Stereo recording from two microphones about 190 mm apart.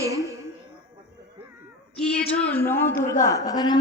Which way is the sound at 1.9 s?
5° left (ahead or behind).